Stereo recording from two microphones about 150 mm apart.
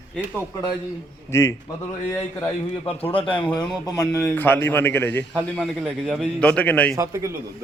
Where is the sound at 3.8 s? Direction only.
25° left (ahead or behind).